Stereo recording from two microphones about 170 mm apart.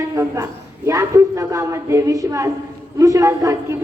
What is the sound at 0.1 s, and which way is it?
A man's voice, 20° right (ahead or behind).